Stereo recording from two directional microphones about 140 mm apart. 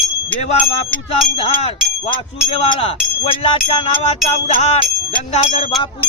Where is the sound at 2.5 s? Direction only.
40° left (ahead or behind).